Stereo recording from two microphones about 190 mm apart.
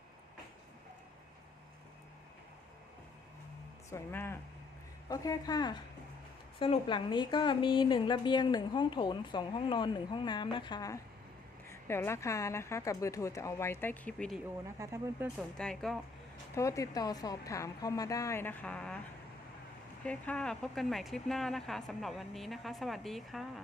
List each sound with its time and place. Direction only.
3.8 s a woman's voice: 15° left (ahead or behind)
14.8 s speech: 15° right (ahead or behind)
15.4 s speech: 5° left (ahead or behind)
16.6 s a woman's voice: 15° left (ahead or behind)
20.1 s speech: 5° left (ahead or behind)